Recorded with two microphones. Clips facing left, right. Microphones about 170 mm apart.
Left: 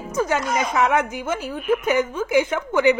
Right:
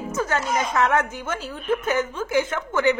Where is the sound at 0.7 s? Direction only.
10° left (ahead or behind).